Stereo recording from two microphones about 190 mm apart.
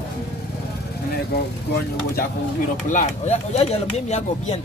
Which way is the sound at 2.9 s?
40° left (ahead or behind).